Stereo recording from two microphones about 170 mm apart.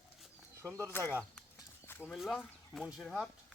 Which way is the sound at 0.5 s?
15° right (ahead or behind).